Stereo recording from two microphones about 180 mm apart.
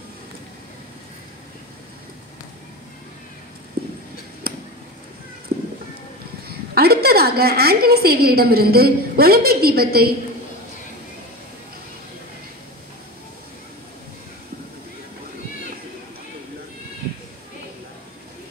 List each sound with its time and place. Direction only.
3.8 s clip-clop: 60° right (ahead or behind)
4.4 s a sound: 55° right (ahead or behind)
6.4 s a woman's voice: 60° right (ahead or behind)